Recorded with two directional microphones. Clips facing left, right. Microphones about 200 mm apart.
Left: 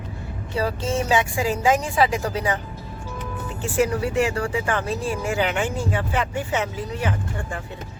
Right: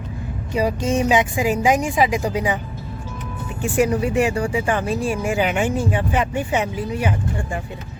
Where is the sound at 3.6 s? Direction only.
15° right (ahead or behind).